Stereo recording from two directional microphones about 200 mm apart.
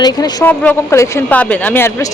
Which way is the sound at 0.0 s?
20° left (ahead or behind).